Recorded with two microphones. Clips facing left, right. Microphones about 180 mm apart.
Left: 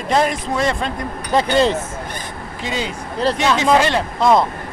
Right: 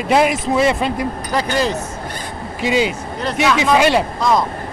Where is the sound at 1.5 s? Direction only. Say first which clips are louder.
Left 4 dB; 25° left (ahead or behind).